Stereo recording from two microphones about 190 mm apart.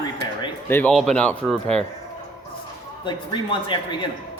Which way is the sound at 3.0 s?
25° left (ahead or behind).